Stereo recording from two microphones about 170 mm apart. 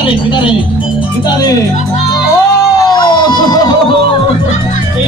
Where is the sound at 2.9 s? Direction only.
25° left (ahead or behind).